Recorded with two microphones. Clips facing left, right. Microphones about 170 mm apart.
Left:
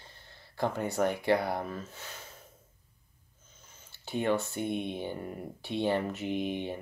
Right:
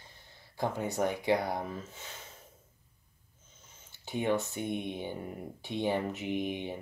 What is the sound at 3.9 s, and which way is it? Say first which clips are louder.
Speech: left 1 dB; 20° right (ahead or behind).